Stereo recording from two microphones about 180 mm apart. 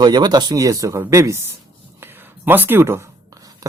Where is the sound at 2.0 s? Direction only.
10° right (ahead or behind).